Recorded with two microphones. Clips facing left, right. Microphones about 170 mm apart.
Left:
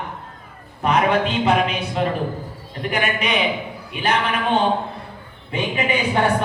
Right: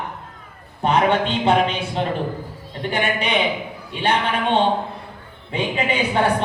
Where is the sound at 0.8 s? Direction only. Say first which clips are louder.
Even; 30° right (ahead or behind).